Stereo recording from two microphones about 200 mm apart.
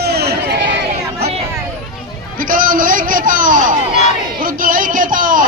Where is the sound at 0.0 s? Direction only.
55° right (ahead or behind).